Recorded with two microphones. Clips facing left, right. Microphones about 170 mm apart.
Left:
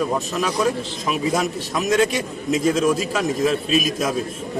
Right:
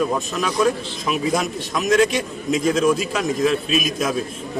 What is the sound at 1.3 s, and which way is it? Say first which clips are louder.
A man's voice: even; 5° left (ahead or behind).